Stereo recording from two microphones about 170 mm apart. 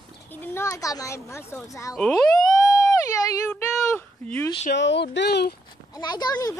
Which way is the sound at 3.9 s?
10° left (ahead or behind).